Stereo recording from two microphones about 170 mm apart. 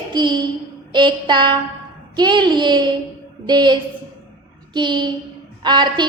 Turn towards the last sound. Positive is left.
turn(degrees=-25)  # may be behind; listen again after turning